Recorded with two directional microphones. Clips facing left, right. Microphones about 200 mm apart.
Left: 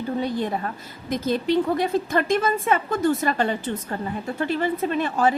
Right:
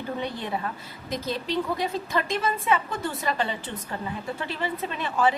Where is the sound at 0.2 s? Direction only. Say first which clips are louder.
Left 5 dB; 40° left (ahead or behind).